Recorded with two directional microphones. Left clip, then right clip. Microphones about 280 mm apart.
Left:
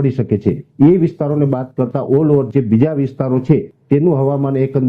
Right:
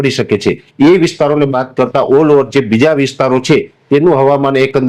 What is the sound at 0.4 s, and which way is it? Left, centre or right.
Speech, right.